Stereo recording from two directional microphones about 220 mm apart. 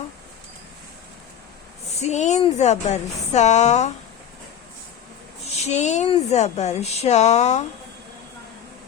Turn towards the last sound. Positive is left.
turn(degrees=30)  # may be behind; listen again after turning